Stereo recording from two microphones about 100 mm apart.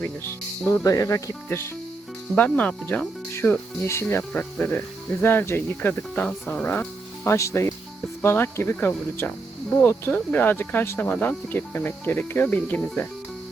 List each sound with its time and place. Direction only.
0.9 s speech: 35° left (ahead or behind)
4.4 s speech: 15° left (ahead or behind)
7.3 s speech: 30° left (ahead or behind)